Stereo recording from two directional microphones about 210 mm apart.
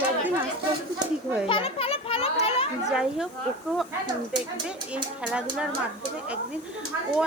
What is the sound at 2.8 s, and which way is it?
Speech, centre (ahead or behind).